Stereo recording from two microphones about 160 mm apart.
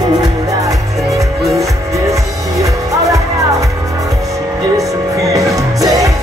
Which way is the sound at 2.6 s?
20° right (ahead or behind).